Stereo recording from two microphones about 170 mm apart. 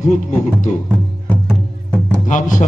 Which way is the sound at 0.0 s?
45° left (ahead or behind).